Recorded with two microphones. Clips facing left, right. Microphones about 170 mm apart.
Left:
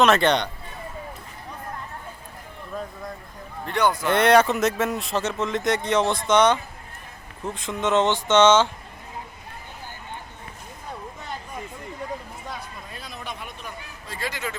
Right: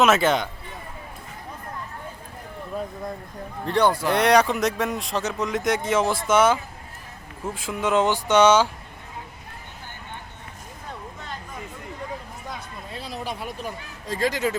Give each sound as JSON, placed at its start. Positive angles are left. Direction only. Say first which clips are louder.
{"t": 0.0, "sound": "speech", "louder": "even", "side_deg": -5}
{"t": 3.7, "sound": "speech", "louder": "right 2 dB", "side_deg": -30}
{"t": 4.0, "sound": "speech", "louder": "left 1 dB", "side_deg": 0}
{"t": 12.9, "sound": "a sound", "louder": "right 7 dB", "side_deg": -30}
{"t": 14.1, "sound": "speech", "louder": "right 8 dB", "side_deg": -40}